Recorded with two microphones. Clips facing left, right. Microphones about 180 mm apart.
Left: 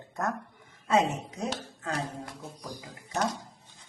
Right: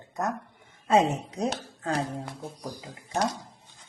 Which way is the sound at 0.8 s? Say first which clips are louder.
Right 3 dB; 30° right (ahead or behind).